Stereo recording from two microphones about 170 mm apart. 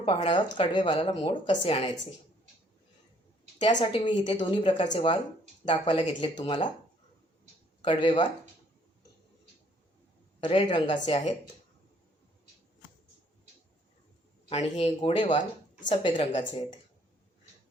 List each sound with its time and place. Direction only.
0.0 s speech: 30° left (ahead or behind)
3.6 s speech: 25° left (ahead or behind)
7.8 s speech: 30° left (ahead or behind)
10.4 s speech: 30° left (ahead or behind)
14.5 s speech: 40° left (ahead or behind)
15.9 s speech: 30° left (ahead or behind)